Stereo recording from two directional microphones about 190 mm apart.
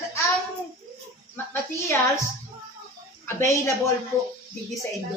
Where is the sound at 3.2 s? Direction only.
15° left (ahead or behind).